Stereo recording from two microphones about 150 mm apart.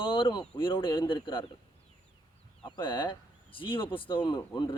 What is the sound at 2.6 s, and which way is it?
Speech, 30° left (ahead or behind).